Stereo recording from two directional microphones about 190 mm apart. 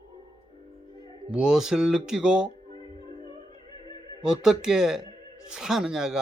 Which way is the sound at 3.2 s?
25° left (ahead or behind).